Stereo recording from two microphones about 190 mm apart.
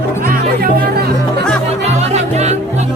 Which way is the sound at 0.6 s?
55° right (ahead or behind).